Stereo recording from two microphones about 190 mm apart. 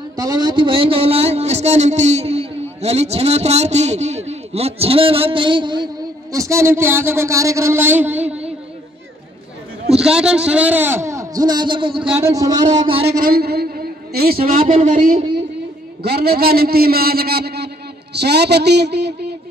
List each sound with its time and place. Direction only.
0.1 s speech: 20° right (ahead or behind)
9.9 s speech: 5° right (ahead or behind); by 12.0 s 25° right (ahead or behind)
12.0 s a man's voice: 5° right (ahead or behind)
12.3 s speech: 20° right (ahead or behind)
13.2 s a sound: 55° right (ahead or behind)
14.5 s a man's voice: 40° right (ahead or behind)
16.0 s a man's voice: 55° right (ahead or behind)
18.1 s a sound: 60° right (ahead or behind)